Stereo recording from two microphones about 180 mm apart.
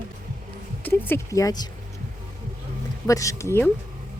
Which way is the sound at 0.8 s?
10° left (ahead or behind).